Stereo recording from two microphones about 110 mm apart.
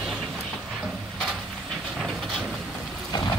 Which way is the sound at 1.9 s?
Centre (ahead or behind).